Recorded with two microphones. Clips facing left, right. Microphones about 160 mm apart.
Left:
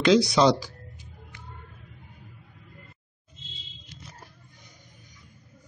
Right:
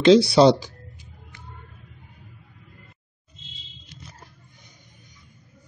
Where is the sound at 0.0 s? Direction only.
30° right (ahead or behind).